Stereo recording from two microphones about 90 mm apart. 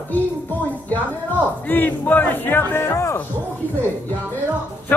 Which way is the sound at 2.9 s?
35° left (ahead or behind).